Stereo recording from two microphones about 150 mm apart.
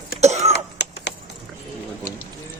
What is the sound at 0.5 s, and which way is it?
Throat clearing, 90° left.